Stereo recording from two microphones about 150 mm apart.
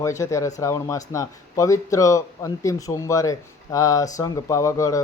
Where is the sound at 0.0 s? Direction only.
20° left (ahead or behind).